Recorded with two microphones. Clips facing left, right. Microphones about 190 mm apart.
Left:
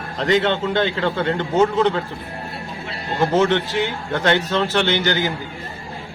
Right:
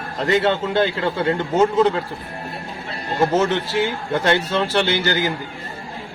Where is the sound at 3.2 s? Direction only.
5° right (ahead or behind).